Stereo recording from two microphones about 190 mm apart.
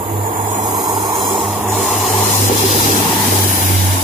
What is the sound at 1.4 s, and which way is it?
Spray, centre (ahead or behind).